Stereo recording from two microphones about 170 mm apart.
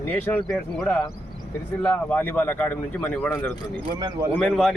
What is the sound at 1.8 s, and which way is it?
Speech, 10° left (ahead or behind).